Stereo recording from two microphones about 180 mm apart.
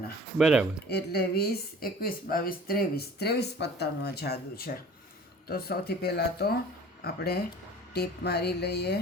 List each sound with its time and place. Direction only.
0.3 s speech: 5° right (ahead or behind)
0.9 s speech: 65° left (ahead or behind)